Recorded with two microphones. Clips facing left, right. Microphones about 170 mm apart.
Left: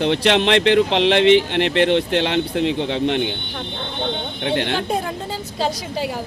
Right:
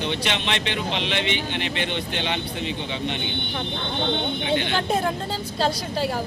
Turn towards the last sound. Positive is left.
turn(degrees=70)  # may be behind; listen again after turning